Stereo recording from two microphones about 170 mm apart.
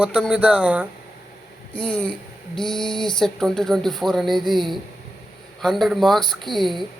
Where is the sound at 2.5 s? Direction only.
Centre (ahead or behind).